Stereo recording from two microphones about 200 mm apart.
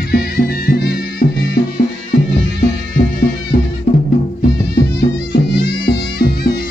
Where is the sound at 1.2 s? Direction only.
40° left (ahead or behind).